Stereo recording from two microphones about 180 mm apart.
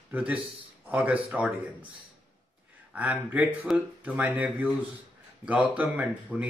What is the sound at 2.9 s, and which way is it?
A man's voice, 10° right (ahead or behind).